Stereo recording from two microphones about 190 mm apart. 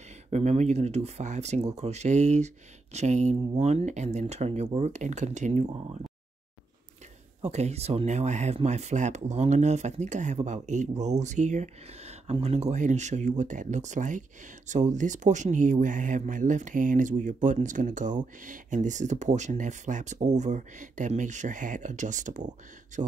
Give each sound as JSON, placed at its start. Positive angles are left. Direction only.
{"t": 0.3, "sound": "speech", "side_deg": -35}
{"t": 7.4, "sound": "speech", "side_deg": -35}